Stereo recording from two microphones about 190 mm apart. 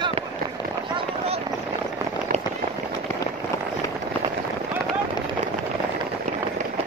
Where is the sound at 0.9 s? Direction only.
30° right (ahead or behind).